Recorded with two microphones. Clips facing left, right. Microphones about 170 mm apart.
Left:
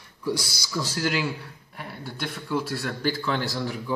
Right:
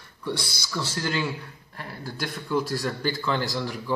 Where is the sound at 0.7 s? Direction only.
10° left (ahead or behind).